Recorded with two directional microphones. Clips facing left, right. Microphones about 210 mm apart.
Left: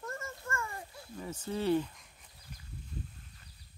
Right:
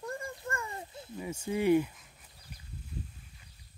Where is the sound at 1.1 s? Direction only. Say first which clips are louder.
Right 3 dB; 10° right (ahead or behind).